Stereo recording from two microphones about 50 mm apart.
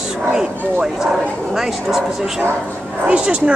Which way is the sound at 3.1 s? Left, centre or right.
Right.